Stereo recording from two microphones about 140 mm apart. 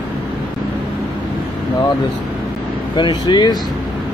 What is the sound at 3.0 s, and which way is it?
Speech, 35° left (ahead or behind).